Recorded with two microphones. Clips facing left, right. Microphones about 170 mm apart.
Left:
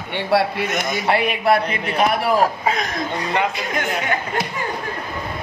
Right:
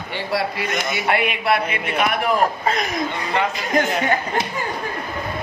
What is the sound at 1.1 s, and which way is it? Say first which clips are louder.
Speech: left 3 dB; 35° left (ahead or behind).